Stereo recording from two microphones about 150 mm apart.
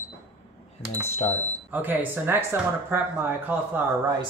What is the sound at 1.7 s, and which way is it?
Speech, 10° right (ahead or behind).